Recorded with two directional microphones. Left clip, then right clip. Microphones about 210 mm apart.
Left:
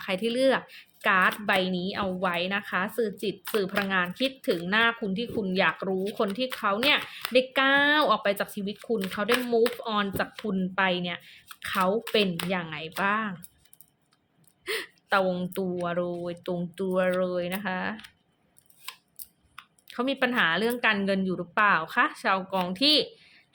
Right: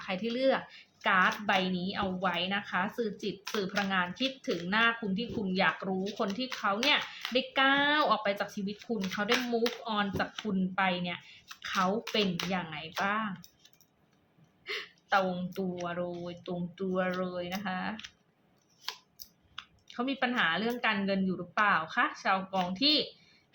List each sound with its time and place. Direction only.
0.0 s speech: 45° left (ahead or behind)
14.6 s a woman's voice: 50° left (ahead or behind)
19.9 s speech: 50° left (ahead or behind)